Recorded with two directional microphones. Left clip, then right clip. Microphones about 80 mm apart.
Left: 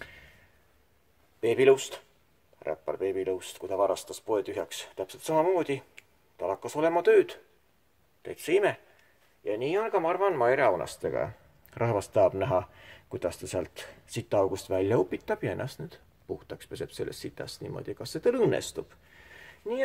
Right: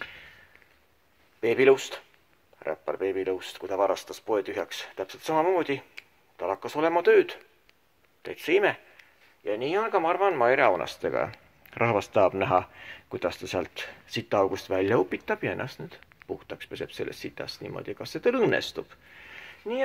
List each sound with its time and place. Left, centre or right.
1.4 s speech: centre
9.4 s speech: centre
19.1 s a sound: left